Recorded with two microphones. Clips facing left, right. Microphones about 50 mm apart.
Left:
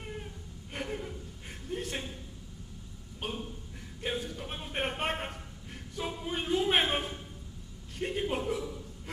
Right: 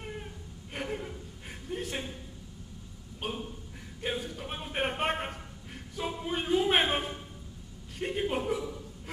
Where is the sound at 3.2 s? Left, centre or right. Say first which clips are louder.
Right 1 dB; centre.